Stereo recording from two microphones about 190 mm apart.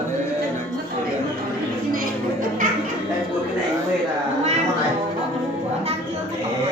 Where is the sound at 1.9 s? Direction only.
45° right (ahead or behind).